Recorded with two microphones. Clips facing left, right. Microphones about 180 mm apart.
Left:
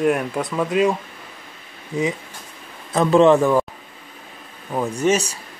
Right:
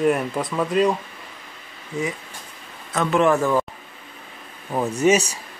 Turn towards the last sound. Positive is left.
turn(degrees=-10)  # may be behind; listen again after turning